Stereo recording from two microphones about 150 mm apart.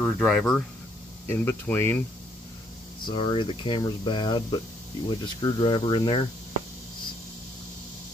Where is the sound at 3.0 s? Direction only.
35° left (ahead or behind).